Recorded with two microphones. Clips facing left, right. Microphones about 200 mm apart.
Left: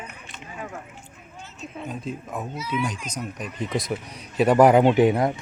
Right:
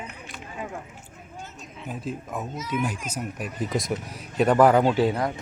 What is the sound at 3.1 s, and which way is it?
A man's voice, 5° right (ahead or behind).